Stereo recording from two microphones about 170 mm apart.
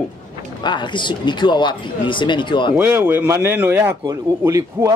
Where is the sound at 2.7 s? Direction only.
10° right (ahead or behind).